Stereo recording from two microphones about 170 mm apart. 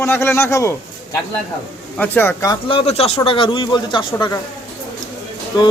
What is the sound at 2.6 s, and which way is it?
A man's voice, 35° left (ahead or behind).